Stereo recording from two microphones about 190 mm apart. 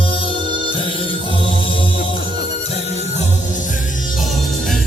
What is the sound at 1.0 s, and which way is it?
Music, 25° left (ahead or behind).